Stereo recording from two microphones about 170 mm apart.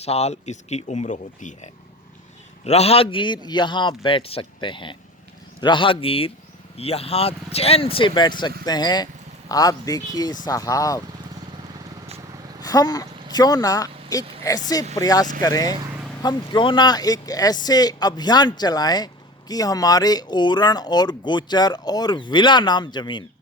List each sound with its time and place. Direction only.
0.0 s speech: 40° left (ahead or behind); by 11.0 s 20° left (ahead or behind)
12.6 s a sound: 20° left (ahead or behind)
13.3 s speech: 20° left (ahead or behind)